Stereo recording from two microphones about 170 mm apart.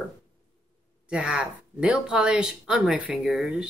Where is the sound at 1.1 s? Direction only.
5° right (ahead or behind).